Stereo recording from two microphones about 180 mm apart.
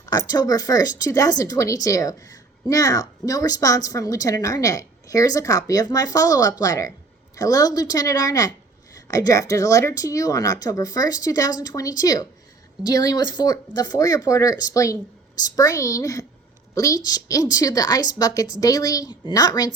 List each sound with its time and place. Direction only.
0.0 s speech: 20° left (ahead or behind)